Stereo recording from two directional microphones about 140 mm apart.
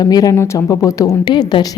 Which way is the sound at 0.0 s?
25° left (ahead or behind).